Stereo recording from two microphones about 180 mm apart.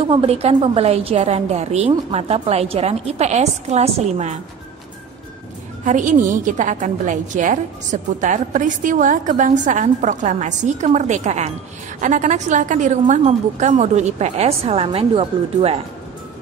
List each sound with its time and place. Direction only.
0.1 s a woman's voice: 30° right (ahead or behind)
5.9 s a woman's voice: 45° right (ahead or behind)